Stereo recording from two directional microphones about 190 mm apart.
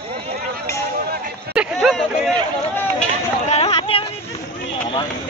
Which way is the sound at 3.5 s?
30° left (ahead or behind).